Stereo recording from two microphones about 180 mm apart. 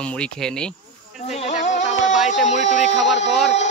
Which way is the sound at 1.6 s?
40° left (ahead or behind).